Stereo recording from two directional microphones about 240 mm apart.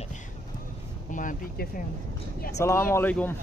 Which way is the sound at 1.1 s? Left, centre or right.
Left.